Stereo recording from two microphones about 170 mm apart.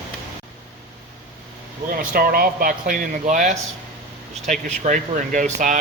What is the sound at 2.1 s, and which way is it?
Speech, 60° right (ahead or behind).